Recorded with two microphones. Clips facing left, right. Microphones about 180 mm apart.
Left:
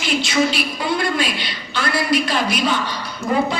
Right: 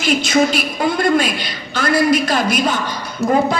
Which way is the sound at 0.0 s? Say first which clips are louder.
Right 4 dB; 45° right (ahead or behind).